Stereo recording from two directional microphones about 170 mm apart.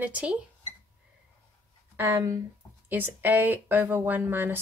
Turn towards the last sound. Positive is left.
turn(degrees=-10)  # may be behind; listen again after turning